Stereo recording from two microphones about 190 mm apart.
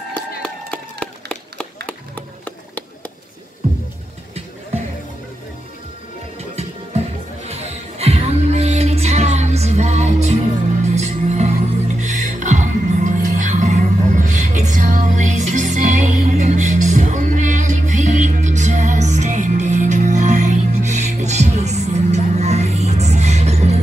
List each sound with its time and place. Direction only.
0.4 s a sound: 5° left (ahead or behind)
1.9 s music: 10° left (ahead or behind)
8.0 s music: 35° right (ahead or behind)